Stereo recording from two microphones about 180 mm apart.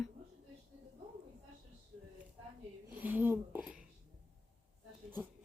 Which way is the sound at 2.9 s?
10° right (ahead or behind).